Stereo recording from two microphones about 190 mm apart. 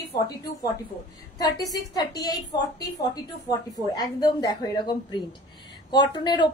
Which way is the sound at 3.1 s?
20° left (ahead or behind).